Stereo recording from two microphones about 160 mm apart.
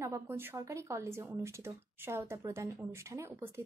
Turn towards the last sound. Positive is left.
turn(degrees=-15)  # may be behind; listen again after turning